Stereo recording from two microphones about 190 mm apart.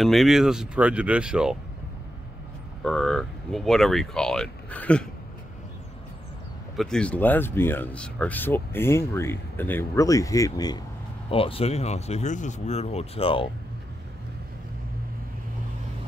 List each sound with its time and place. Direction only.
0.0 s speech: centre (ahead or behind)
2.8 s speech: centre (ahead or behind)
6.8 s speech: 5° left (ahead or behind)
11.2 s speech: 30° left (ahead or behind)